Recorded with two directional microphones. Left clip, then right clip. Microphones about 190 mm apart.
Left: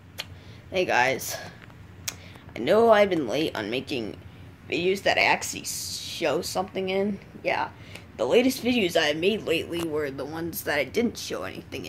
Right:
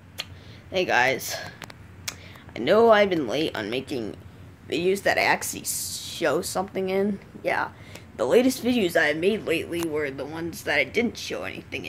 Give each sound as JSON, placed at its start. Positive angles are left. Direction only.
{"t": 0.2, "sound": "a sound", "side_deg": 0}
{"t": 2.0, "sound": "speech", "side_deg": -5}
{"t": 4.6, "sound": "speech", "side_deg": -10}